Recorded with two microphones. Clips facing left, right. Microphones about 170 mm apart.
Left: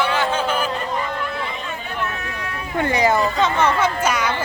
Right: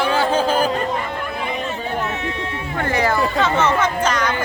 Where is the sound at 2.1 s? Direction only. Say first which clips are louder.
Right 5 dB; 25° right (ahead or behind).